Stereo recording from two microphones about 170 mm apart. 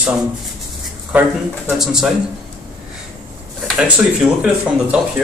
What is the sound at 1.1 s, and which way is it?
Speech, 5° right (ahead or behind).